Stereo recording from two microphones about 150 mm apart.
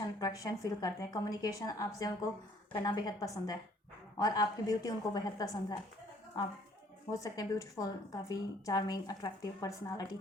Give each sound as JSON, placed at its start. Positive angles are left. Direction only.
{"t": 0.0, "sound": "a woman's voice", "side_deg": 25}
{"t": 7.1, "sound": "a woman's voice", "side_deg": 20}